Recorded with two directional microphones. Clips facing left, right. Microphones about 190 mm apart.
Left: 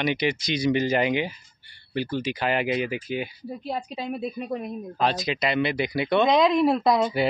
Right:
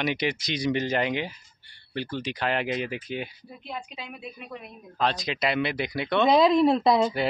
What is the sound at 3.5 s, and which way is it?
A woman's voice, 35° left (ahead or behind).